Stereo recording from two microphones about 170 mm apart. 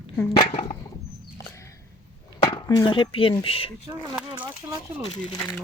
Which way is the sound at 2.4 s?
25° left (ahead or behind).